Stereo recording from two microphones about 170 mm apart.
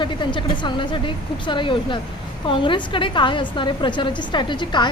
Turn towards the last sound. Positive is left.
turn(degrees=25)  # may be behind; listen again after turning